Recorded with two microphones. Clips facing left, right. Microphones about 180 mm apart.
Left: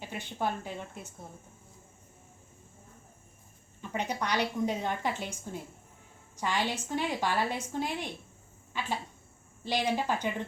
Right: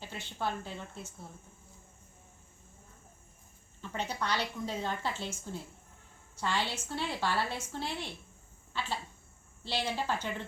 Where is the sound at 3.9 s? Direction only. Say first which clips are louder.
Left 3 dB; 15° left (ahead or behind).